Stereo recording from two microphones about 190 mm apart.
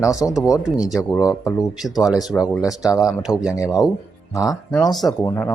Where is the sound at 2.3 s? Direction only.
5° left (ahead or behind).